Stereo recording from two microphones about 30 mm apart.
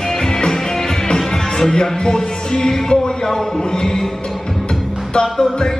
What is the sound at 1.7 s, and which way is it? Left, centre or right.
Music, left.